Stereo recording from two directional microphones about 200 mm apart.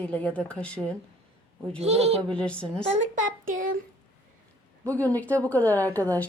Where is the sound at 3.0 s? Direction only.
40° right (ahead or behind).